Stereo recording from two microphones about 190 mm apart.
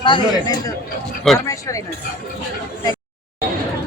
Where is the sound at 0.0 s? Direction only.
25° left (ahead or behind).